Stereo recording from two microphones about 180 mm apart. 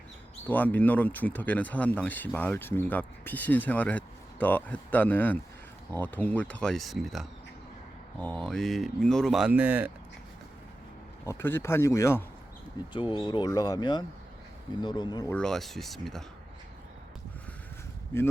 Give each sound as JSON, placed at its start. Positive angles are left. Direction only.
{"t": 0.4, "sound": "speech", "side_deg": 10}
{"t": 11.3, "sound": "speech", "side_deg": 15}
{"t": 12.9, "sound": "speech", "side_deg": 25}
{"t": 15.3, "sound": "speech", "side_deg": 5}